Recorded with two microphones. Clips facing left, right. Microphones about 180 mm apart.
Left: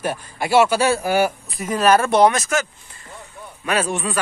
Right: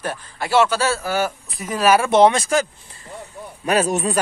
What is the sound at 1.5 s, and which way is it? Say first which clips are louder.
Speech: left 1 dB; centre (ahead or behind).